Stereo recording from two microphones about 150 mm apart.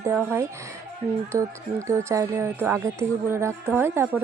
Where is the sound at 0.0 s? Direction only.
15° right (ahead or behind).